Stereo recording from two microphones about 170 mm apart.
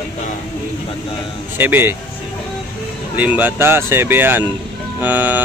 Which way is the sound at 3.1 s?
10° right (ahead or behind).